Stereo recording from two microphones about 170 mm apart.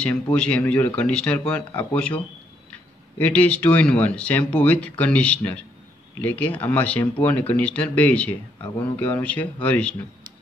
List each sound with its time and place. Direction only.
0.0 s speech: 5° left (ahead or behind)